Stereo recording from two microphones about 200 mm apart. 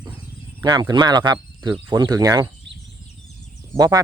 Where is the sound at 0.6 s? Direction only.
20° right (ahead or behind).